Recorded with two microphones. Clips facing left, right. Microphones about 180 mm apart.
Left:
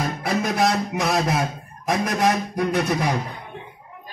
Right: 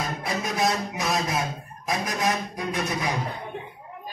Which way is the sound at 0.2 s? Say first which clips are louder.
Left 5 dB; 70° left (ahead or behind).